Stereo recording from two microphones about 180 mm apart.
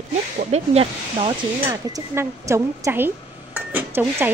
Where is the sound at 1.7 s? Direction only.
15° right (ahead or behind).